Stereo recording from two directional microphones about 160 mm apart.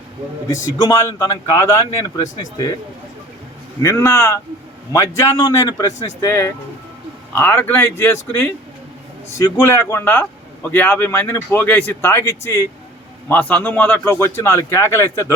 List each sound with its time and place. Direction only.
0.5 s speech: 20° left (ahead or behind)
3.8 s speech: 15° left (ahead or behind)